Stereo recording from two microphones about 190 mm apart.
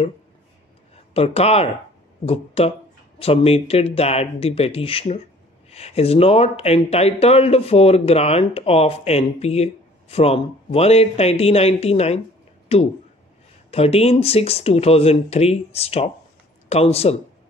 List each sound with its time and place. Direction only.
1.1 s speech: 30° left (ahead or behind)